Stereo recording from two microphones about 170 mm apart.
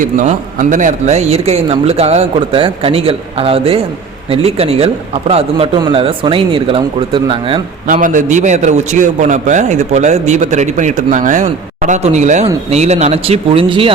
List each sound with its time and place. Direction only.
0.0 s speech: 50° right (ahead or behind); by 7.6 s 30° right (ahead or behind)
8.0 s a man's voice: 50° right (ahead or behind); by 13.9 s 30° right (ahead or behind)